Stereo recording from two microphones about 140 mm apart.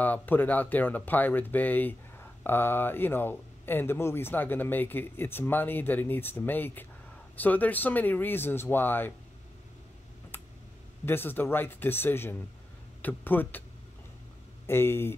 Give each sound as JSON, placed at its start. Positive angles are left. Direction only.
{"t": 0.0, "sound": "speech", "side_deg": 10}
{"t": 10.3, "sound": "tick", "side_deg": 15}
{"t": 11.1, "sound": "speech", "side_deg": 15}
{"t": 14.7, "sound": "speech", "side_deg": 15}